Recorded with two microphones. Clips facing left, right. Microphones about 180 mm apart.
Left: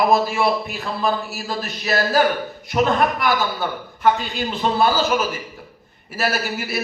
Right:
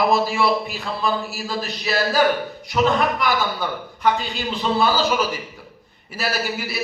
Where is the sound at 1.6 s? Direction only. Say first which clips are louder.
Left 1 dB; 50° left (ahead or behind).